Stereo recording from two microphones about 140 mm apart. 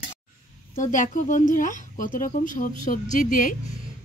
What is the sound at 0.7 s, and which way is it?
A woman's voice, 65° left (ahead or behind).